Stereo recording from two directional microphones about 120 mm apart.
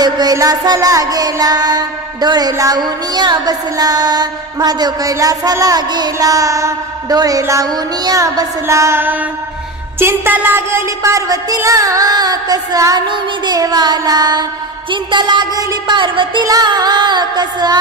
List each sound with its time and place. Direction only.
0.0 s music: 35° right (ahead or behind)